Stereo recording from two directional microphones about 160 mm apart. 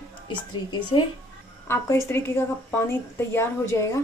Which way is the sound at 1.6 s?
20° left (ahead or behind).